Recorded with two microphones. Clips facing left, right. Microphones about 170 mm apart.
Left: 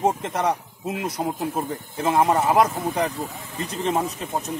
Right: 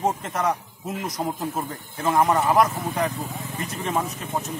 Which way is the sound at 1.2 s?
10° left (ahead or behind).